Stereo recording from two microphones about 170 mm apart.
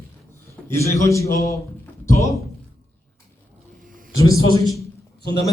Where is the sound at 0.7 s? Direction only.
15° left (ahead or behind).